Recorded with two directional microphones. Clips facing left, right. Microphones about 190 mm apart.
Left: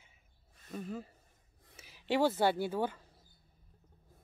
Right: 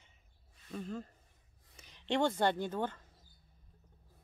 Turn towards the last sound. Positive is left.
turn(degrees=10)  # may be behind; listen again after turning